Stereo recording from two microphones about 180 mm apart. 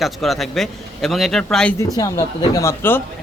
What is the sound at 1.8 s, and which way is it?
Speech, 20° left (ahead or behind).